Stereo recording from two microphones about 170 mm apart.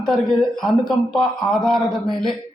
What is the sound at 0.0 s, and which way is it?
Speech, 5° left (ahead or behind).